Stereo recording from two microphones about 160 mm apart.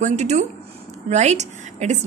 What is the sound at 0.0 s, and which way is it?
A woman's voice, 45° right (ahead or behind).